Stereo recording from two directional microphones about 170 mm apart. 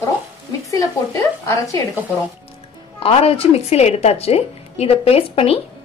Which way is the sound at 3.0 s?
35° left (ahead or behind).